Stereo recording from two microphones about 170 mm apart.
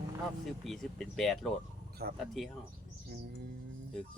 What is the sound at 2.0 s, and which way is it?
Speech, 70° right (ahead or behind).